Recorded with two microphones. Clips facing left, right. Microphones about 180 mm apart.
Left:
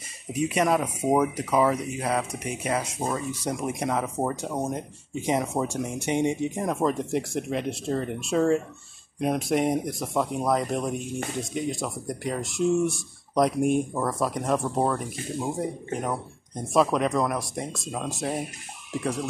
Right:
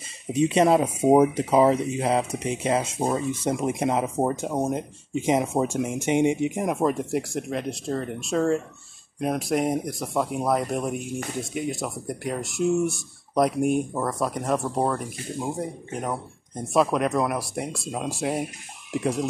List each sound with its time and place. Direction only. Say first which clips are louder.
0.3 s speech: right 4 dB; 25° right (ahead or behind)